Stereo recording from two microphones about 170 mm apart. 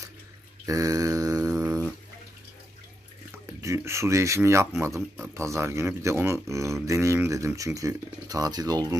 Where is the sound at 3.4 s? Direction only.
15° right (ahead or behind).